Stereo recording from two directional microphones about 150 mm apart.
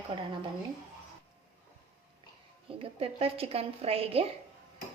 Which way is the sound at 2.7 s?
35° right (ahead or behind).